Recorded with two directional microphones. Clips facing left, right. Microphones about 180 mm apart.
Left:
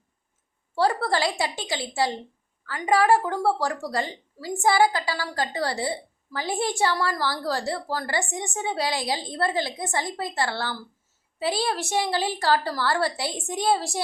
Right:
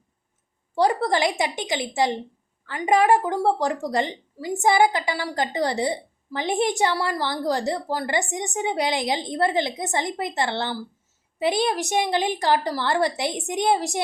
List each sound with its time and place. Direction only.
0.8 s a woman's voice: 15° right (ahead or behind)